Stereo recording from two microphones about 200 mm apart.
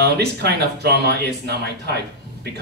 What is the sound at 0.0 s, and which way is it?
A man's voice, 55° right (ahead or behind).